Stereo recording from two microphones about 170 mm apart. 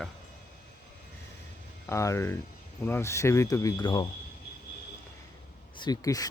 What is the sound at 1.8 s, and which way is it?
Speech, 15° left (ahead or behind).